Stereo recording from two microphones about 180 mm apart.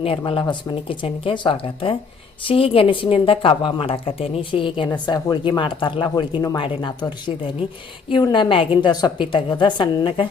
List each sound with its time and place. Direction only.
0.3 s speech: 25° left (ahead or behind)